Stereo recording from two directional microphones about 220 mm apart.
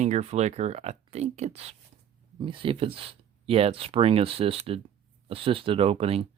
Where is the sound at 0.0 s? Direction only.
30° right (ahead or behind).